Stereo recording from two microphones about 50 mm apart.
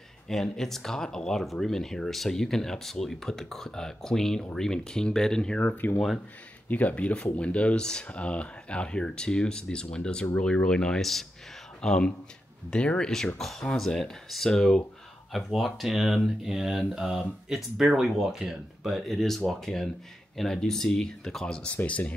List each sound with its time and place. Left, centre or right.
0.3 s speech: centre
5.6 s speech: left; by 11.0 s centre
11.0 s speech: centre; by 13.1 s left
13.4 s speech: centre
21.8 s speech: left